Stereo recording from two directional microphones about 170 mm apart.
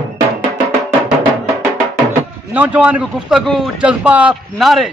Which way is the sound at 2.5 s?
10° right (ahead or behind).